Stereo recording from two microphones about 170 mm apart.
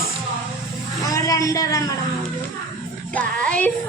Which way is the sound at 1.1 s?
20° left (ahead or behind).